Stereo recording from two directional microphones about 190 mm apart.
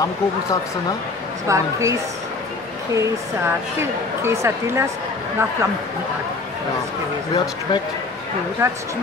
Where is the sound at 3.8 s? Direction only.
15° right (ahead or behind).